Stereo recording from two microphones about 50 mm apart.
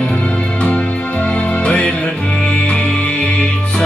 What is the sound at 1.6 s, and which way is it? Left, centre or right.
Music, left.